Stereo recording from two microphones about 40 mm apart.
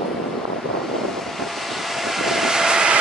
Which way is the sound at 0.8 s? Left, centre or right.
Centre.